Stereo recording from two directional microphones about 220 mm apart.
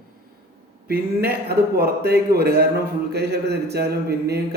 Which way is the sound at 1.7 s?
45° right (ahead or behind).